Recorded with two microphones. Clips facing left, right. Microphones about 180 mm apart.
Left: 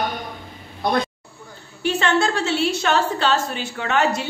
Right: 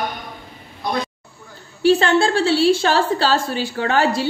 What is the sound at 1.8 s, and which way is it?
A woman's voice, 30° right (ahead or behind).